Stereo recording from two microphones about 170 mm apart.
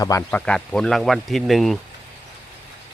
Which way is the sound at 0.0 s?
20° left (ahead or behind).